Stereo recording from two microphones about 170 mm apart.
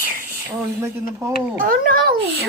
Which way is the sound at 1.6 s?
55° right (ahead or behind).